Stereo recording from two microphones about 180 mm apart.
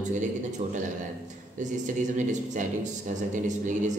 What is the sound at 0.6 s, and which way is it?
A man's voice, 35° right (ahead or behind).